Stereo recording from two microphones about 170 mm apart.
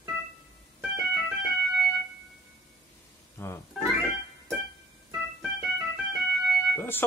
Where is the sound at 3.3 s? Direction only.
15° left (ahead or behind).